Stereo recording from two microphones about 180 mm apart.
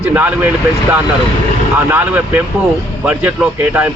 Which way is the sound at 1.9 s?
10° right (ahead or behind).